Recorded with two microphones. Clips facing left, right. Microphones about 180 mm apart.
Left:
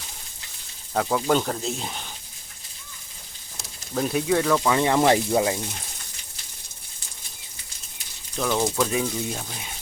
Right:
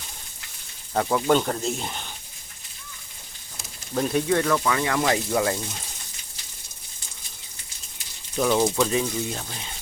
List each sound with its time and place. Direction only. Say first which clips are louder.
0.9 s speech: right 1 dB; centre (ahead or behind)
3.9 s speech: even; 5° left (ahead or behind)
4.6 s speech: left 4 dB; 25° left (ahead or behind)
8.4 s speech: right 2 dB; 5° right (ahead or behind)